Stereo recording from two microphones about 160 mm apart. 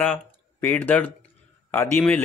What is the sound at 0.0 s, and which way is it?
A man's voice, 10° left (ahead or behind).